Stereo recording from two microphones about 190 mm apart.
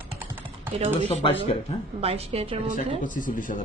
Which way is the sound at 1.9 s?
30° right (ahead or behind).